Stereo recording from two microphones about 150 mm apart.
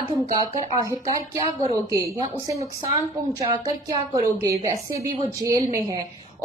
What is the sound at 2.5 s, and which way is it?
A woman's voice, 35° right (ahead or behind).